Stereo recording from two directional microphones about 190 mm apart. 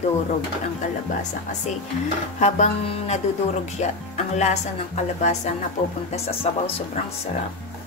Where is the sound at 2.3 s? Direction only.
35° left (ahead or behind).